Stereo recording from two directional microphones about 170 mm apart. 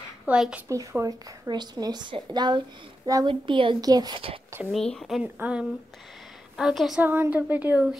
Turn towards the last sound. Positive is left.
turn(degrees=-10)  # may be behind; listen again after turning